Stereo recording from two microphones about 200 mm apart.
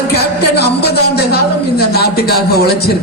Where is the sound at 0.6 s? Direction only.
55° left (ahead or behind).